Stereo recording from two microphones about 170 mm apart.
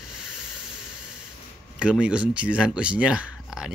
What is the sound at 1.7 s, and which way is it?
Speech, 5° right (ahead or behind).